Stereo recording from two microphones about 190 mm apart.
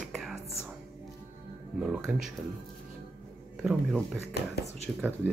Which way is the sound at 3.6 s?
5° right (ahead or behind).